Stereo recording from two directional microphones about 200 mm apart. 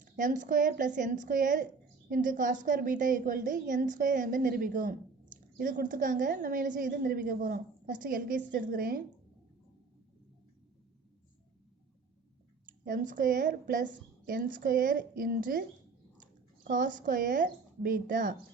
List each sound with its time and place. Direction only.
0.0 s a woman's voice: 40° right (ahead or behind)
12.8 s a woman's voice: 45° right (ahead or behind)
16.6 s a woman's voice: 40° right (ahead or behind)